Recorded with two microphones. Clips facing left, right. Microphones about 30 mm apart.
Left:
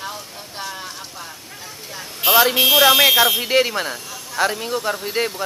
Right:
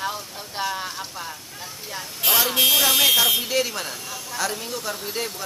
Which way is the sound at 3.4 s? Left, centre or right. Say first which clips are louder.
Left 6 dB; left.